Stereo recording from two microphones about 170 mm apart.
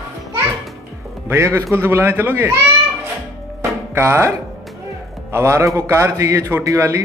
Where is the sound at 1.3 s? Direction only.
15° right (ahead or behind).